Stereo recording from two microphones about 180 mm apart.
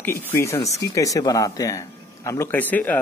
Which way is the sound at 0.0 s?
10° left (ahead or behind).